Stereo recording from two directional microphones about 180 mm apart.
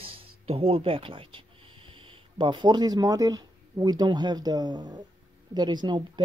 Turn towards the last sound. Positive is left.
turn(degrees=-25)  # may be behind; listen again after turning